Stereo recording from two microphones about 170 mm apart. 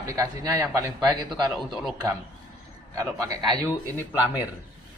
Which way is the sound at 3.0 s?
20° right (ahead or behind).